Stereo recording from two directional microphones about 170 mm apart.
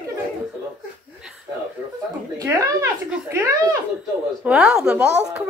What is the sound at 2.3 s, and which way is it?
Speech, 20° right (ahead or behind).